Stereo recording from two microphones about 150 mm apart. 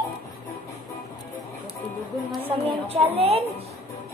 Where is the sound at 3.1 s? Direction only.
40° right (ahead or behind).